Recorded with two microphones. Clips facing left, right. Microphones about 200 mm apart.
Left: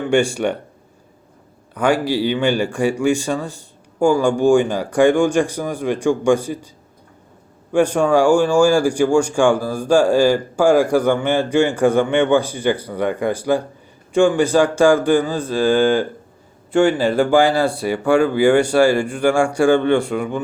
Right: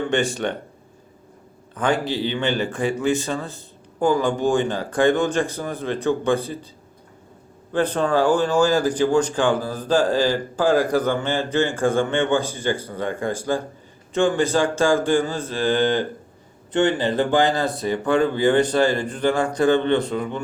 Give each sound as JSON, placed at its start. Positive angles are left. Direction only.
{"t": 0.1, "sound": "speech", "side_deg": 10}
{"t": 1.8, "sound": "speech", "side_deg": 10}
{"t": 7.7, "sound": "speech", "side_deg": 10}
{"t": 16.7, "sound": "speech", "side_deg": -20}
{"t": 17.3, "sound": "speech", "side_deg": 10}